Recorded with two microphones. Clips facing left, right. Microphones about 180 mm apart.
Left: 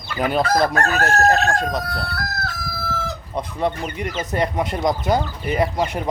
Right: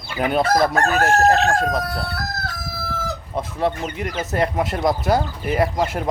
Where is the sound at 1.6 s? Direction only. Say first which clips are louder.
Right 2 dB; 5° right (ahead or behind).